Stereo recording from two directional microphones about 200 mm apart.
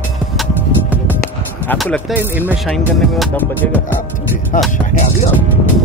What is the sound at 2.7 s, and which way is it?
Speech, centre (ahead or behind).